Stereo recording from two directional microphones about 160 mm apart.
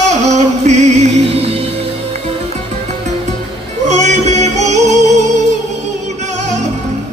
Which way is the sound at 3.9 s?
45° right (ahead or behind).